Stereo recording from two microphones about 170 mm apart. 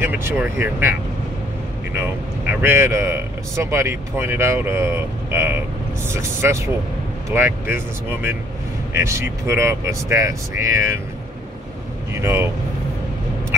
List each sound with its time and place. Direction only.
0.0 s a man's voice: 15° right (ahead or behind)
2.5 s a man's voice: 15° right (ahead or behind)
12.1 s a man's voice: 15° right (ahead or behind)